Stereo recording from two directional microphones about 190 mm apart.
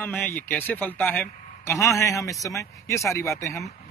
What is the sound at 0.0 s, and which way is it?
A man's voice, 10° left (ahead or behind).